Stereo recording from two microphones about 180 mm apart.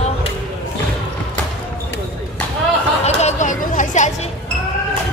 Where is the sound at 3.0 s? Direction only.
40° left (ahead or behind).